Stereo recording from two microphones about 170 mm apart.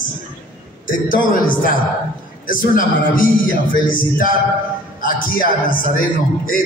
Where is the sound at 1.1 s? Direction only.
55° left (ahead or behind).